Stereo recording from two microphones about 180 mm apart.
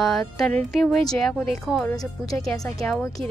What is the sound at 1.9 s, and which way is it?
Speech, 20° left (ahead or behind).